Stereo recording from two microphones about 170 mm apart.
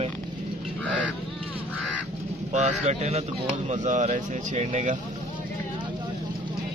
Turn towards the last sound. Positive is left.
turn(degrees=-40)  # may be behind; listen again after turning